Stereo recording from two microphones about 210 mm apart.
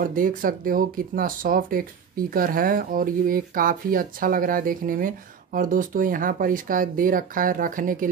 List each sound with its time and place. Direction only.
0.0 s speech: 40° right (ahead or behind)